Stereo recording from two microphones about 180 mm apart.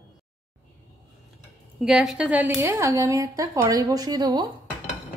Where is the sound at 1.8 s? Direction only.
Centre (ahead or behind); by 4.5 s 25° right (ahead or behind).